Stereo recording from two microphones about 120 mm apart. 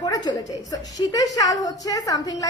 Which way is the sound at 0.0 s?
35° left (ahead or behind).